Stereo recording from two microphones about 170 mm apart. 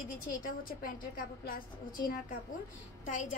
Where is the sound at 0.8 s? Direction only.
60° left (ahead or behind).